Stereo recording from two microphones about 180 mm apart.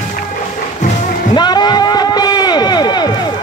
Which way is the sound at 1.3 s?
25° left (ahead or behind).